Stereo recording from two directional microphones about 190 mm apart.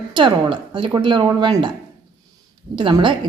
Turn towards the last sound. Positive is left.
turn(degrees=-25)  # may be behind; listen again after turning